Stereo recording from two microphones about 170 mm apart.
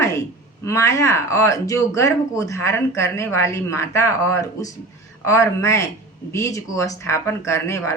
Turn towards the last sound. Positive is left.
turn(degrees=15)  # may be behind; listen again after turning